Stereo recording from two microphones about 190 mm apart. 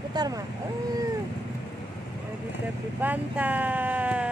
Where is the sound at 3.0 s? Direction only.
10° right (ahead or behind).